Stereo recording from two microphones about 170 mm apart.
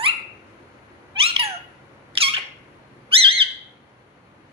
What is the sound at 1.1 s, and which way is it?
Cat, 35° right (ahead or behind).